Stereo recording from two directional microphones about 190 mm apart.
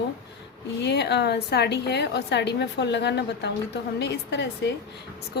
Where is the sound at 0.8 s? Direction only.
60° left (ahead or behind).